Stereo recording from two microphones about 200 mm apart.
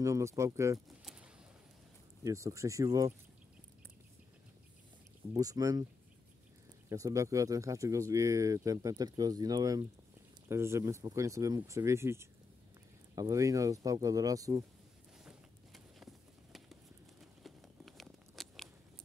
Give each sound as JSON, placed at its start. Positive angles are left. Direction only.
{"t": 0.0, "sound": "speech", "side_deg": -15}
{"t": 0.8, "sound": "pigeon", "side_deg": -5}
{"t": 2.2, "sound": "speech", "side_deg": -15}
{"t": 5.3, "sound": "speech", "side_deg": -20}
{"t": 6.9, "sound": "speech", "side_deg": -15}
{"t": 15.2, "sound": "a sound", "side_deg": 0}